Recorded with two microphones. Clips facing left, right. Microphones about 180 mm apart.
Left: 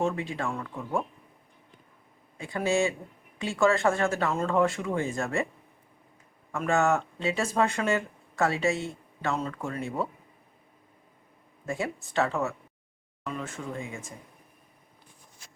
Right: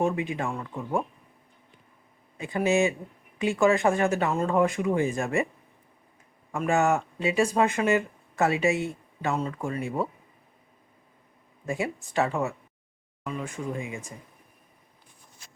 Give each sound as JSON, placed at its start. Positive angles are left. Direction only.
{"t": 0.0, "sound": "speech", "side_deg": -15}
{"t": 2.4, "sound": "speech", "side_deg": -20}
{"t": 6.5, "sound": "speech", "side_deg": -15}
{"t": 11.6, "sound": "speech", "side_deg": -15}